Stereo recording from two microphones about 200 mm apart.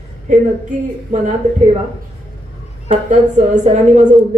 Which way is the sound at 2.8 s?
35° right (ahead or behind).